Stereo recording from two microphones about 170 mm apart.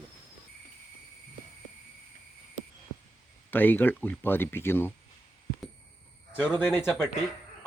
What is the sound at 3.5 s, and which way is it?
Speech, 10° left (ahead or behind).